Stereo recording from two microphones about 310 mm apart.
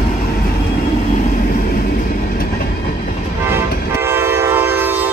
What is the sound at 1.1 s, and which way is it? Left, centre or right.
Train, left.